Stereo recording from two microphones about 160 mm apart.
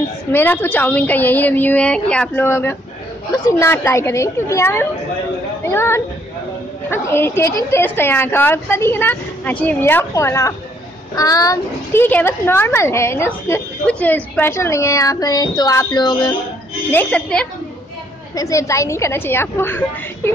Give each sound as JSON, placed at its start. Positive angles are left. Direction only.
{"t": 0.3, "sound": "a woman's voice", "side_deg": 10}
{"t": 16.9, "sound": "a woman's voice", "side_deg": 10}
{"t": 18.3, "sound": "a woman's voice", "side_deg": 20}